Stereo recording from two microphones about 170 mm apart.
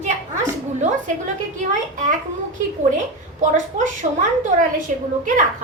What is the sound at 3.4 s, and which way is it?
Speech, 45° right (ahead or behind).